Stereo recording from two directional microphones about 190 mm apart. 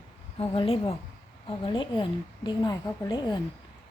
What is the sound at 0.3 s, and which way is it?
A woman's voice, 30° left (ahead or behind).